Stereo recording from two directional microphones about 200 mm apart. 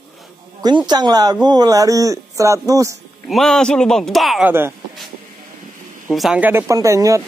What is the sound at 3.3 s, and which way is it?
A man's voice, centre (ahead or behind).